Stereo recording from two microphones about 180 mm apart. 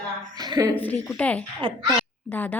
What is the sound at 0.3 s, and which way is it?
Speech, 20° right (ahead or behind).